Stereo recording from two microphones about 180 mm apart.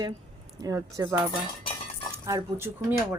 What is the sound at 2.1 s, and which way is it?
Speech, 15° right (ahead or behind).